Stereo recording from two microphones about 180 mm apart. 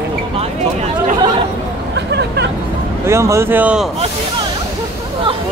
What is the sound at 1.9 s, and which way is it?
Hubbub, 70° right (ahead or behind).